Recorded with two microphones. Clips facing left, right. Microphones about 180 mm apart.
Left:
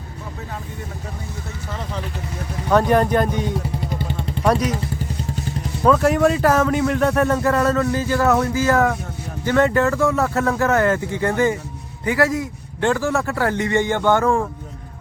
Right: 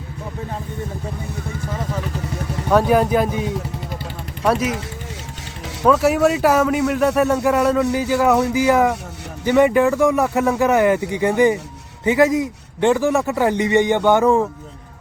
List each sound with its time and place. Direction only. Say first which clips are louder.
2.6 s speech: right 1 dB; 5° right (ahead or behind)
5.8 s a man's voice: right 1 dB; 5° right (ahead or behind)